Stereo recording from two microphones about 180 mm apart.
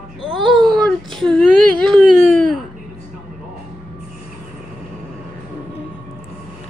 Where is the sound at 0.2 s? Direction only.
Centre (ahead or behind).